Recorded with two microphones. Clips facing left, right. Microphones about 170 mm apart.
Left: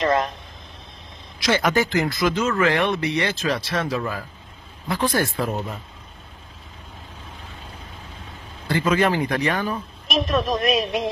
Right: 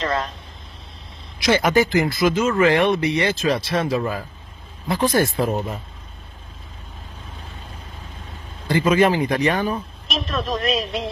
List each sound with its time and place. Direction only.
1.4 s speech: 10° right (ahead or behind)
3.4 s speech: 30° right (ahead or behind)
4.8 s speech: 20° right (ahead or behind)
8.6 s speech: 15° right (ahead or behind)
10.0 s a woman's voice: 15° left (ahead or behind)